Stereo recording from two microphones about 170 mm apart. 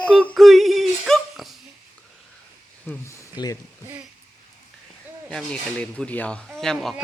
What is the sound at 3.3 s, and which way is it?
Speech, 25° left (ahead or behind).